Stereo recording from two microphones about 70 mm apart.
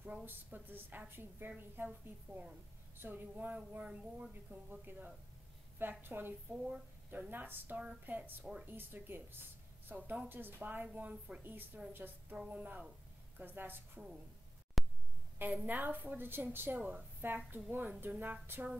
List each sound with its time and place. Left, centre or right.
0.2 s a woman's voice: right
3.8 s speech: centre
4.3 s a woman's voice: right
6.5 s speech: centre
7.1 s a woman's voice: right
11.4 s a woman's voice: right
14.8 s a sound: centre
15.3 s a woman's voice: right